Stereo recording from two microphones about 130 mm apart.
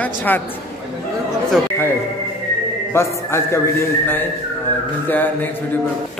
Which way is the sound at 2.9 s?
20° left (ahead or behind).